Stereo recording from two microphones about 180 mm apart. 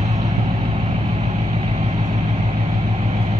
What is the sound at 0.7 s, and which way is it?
Vehicle, 35° right (ahead or behind).